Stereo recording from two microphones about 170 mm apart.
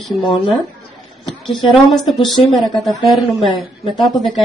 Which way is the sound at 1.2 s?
25° left (ahead or behind).